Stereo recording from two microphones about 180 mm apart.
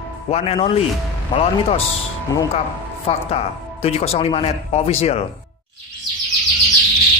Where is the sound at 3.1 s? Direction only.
35° left (ahead or behind).